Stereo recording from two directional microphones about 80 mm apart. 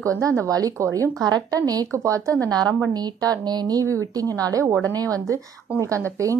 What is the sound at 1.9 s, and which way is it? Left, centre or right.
A woman's voice, right.